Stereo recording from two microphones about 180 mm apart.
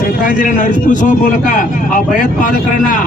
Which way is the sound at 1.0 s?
45° left (ahead or behind).